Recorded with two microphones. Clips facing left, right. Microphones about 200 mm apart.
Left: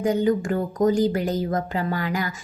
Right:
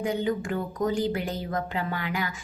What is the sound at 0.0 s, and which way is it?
A woman's voice, 40° left (ahead or behind).